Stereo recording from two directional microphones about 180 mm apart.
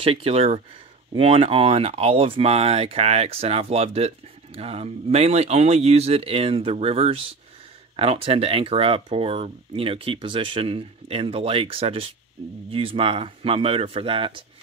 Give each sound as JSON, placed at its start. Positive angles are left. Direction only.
{"t": 0.0, "sound": "speech", "side_deg": -30}